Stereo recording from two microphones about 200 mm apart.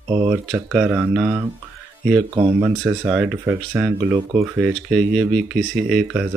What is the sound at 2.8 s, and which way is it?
Speech, centre (ahead or behind).